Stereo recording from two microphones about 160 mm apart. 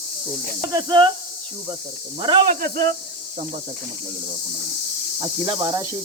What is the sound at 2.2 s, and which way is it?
Speech, 30° right (ahead or behind).